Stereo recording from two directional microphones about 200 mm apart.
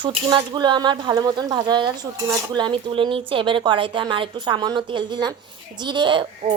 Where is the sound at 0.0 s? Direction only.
20° right (ahead or behind).